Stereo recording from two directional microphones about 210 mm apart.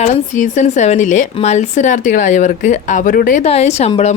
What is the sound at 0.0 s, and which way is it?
A woman's voice, 35° left (ahead or behind).